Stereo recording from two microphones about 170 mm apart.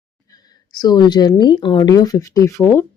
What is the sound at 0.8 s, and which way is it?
Speech, 25° left (ahead or behind).